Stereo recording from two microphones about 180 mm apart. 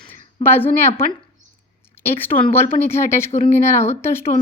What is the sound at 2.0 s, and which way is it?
Speech, 10° left (ahead or behind).